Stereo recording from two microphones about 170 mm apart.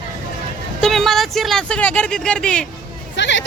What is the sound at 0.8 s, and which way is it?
A man's voice, centre (ahead or behind).